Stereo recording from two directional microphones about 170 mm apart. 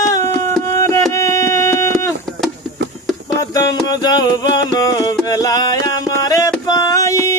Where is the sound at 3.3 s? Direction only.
20° left (ahead or behind).